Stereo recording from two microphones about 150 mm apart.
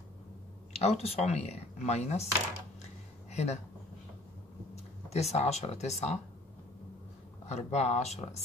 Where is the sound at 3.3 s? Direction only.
45° left (ahead or behind).